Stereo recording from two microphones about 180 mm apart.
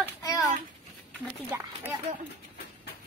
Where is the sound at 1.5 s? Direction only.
10° right (ahead or behind).